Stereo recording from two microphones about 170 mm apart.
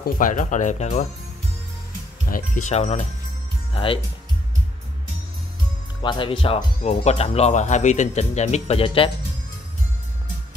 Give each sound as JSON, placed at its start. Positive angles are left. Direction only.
{"t": 0.0, "sound": "speech", "side_deg": 50}
{"t": 2.2, "sound": "speech", "side_deg": 55}
{"t": 2.7, "sound": "speech", "side_deg": 40}
{"t": 6.0, "sound": "speech", "side_deg": 30}